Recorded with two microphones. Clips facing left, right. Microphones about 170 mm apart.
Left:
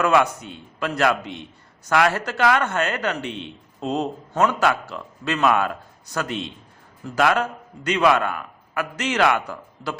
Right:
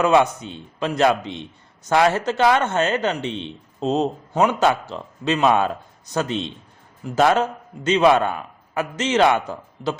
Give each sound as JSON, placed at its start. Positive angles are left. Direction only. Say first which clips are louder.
{"t": 0.0, "sound": "a man's voice", "louder": "right 2 dB", "side_deg": -25}